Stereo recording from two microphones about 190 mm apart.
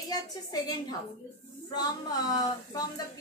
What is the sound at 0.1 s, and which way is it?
A woman's voice, 20° left (ahead or behind).